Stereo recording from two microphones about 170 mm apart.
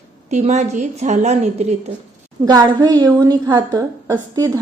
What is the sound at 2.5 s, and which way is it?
A woman's voice, 25° right (ahead or behind).